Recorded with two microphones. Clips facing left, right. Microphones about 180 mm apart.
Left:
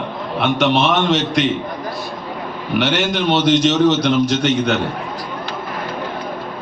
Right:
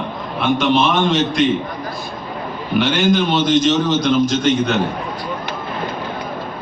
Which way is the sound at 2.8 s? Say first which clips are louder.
Right 3 dB; 70° left (ahead or behind).